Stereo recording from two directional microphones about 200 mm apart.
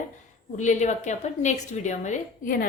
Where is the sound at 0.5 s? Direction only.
35° left (ahead or behind).